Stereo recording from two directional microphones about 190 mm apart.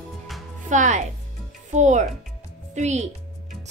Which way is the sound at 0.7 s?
40° right (ahead or behind).